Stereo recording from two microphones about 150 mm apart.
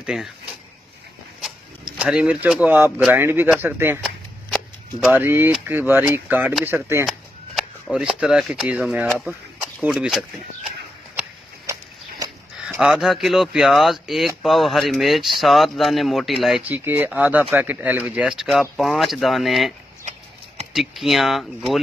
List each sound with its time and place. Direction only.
0.0 s speech: 5° right (ahead or behind)
2.0 s speech: 5° right (ahead or behind)
5.1 s speech: 15° right (ahead or behind)
7.1 s speech: centre (ahead or behind)
11.6 s a sound: 25° right (ahead or behind)
12.5 s speech: 5° right (ahead or behind)
20.7 s speech: centre (ahead or behind)